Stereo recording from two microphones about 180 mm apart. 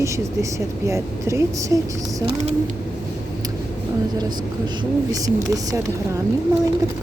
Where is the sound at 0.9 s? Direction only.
15° right (ahead or behind).